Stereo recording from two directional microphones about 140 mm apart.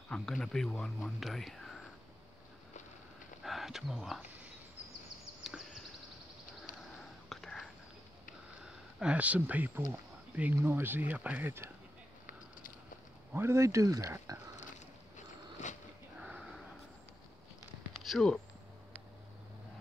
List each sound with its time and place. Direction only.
0.1 s speech: 5° left (ahead or behind)
3.4 s speech: centre (ahead or behind)
7.2 s whispering: centre (ahead or behind)
8.6 s speech: 10° right (ahead or behind)
13.3 s speech: 15° right (ahead or behind)
15.6 s a sound: 55° left (ahead or behind)
16.2 s sniff: 5° right (ahead or behind)
17.9 s a sound: centre (ahead or behind)